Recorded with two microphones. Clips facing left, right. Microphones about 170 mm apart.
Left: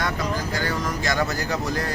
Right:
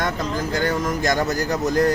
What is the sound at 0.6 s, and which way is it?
Speech, 45° right (ahead or behind).